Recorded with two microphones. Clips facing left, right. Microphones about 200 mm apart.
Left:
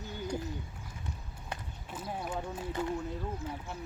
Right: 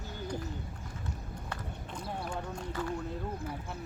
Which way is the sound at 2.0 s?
5° left (ahead or behind).